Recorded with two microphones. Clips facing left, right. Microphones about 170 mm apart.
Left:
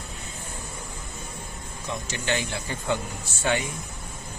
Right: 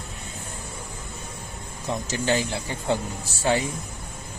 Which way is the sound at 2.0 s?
30° right (ahead or behind).